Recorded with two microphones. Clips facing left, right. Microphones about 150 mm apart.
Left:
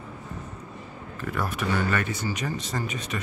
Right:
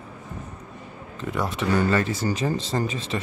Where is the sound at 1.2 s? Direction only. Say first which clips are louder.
Right 3 dB; 20° right (ahead or behind).